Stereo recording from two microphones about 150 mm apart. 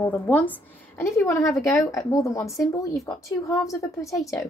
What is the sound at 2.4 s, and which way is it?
Speech, centre (ahead or behind).